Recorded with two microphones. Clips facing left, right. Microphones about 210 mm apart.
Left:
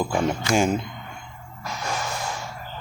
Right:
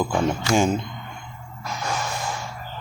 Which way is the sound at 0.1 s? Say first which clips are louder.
Right 1 dB; centre (ahead or behind).